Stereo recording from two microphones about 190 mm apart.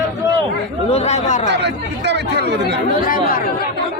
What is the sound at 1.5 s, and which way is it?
Speech, 65° right (ahead or behind).